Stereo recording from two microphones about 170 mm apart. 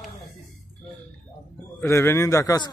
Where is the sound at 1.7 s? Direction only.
15° left (ahead or behind).